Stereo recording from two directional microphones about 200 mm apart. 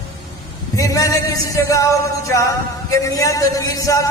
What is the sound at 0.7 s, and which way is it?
A man's voice, 15° left (ahead or behind).